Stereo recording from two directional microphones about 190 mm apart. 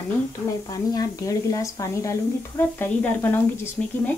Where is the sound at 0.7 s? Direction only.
20° left (ahead or behind).